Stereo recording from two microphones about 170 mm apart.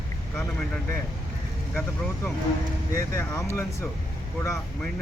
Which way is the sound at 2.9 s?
15° left (ahead or behind).